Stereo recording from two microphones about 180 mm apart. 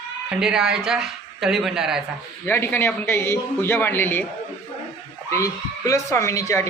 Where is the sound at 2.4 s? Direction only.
10° left (ahead or behind).